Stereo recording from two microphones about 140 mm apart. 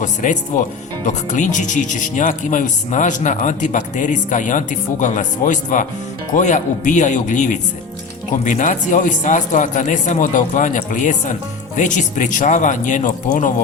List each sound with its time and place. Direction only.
0.0 s speech: 60° left (ahead or behind)